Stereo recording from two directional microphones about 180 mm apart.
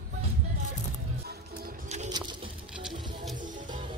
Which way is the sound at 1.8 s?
40° right (ahead or behind).